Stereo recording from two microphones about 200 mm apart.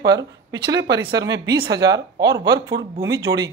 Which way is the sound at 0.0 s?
20° right (ahead or behind).